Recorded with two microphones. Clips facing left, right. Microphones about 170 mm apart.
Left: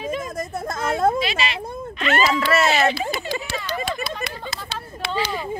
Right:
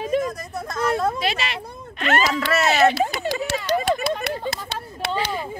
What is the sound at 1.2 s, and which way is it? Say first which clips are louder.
Speech: left 1 dB; 55° right (ahead or behind).